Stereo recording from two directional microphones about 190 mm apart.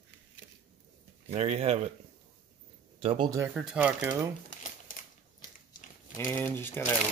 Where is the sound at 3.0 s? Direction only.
25° right (ahead or behind).